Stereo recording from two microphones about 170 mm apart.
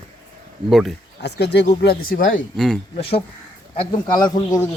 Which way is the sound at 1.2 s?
80° left.